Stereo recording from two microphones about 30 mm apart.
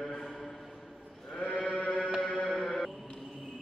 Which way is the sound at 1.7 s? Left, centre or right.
Left.